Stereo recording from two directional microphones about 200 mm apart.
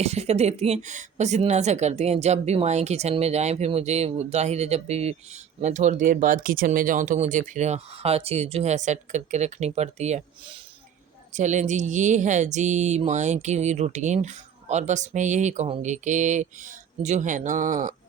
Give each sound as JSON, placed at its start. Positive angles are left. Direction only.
{"t": 0.0, "sound": "speech", "side_deg": -30}